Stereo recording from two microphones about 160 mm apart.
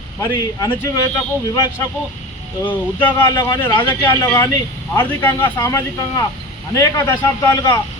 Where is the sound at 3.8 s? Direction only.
10° left (ahead or behind).